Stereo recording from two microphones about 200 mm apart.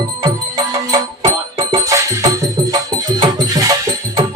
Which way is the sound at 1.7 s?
15° right (ahead or behind).